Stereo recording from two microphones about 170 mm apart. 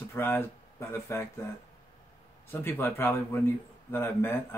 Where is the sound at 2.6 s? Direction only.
15° left (ahead or behind).